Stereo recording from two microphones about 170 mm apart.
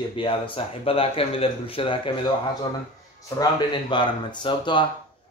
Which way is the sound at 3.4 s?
25° left (ahead or behind).